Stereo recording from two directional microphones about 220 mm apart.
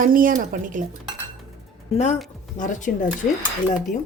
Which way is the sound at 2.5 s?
35° left (ahead or behind).